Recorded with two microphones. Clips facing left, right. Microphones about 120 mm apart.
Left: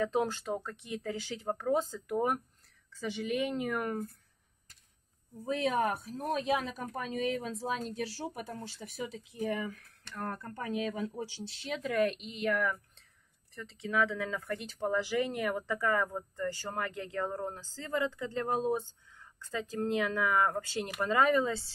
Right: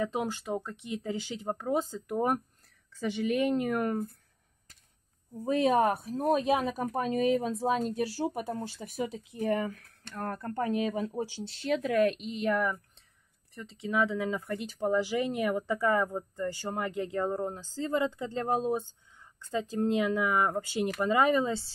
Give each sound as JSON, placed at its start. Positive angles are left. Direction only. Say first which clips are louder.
{"t": 0.0, "sound": "speech", "louder": "left 1 dB", "side_deg": -15}
{"t": 2.0, "sound": "speech", "louder": "right 3 dB", "side_deg": -30}
{"t": 2.9, "sound": "speech", "louder": "right 4 dB", "side_deg": -50}
{"t": 6.0, "sound": "speech", "louder": "right 6 dB", "side_deg": -50}
{"t": 13.6, "sound": "speech", "louder": "right 2 dB", "side_deg": -20}